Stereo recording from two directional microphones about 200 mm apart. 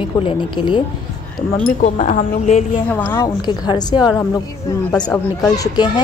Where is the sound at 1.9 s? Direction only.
35° left (ahead or behind).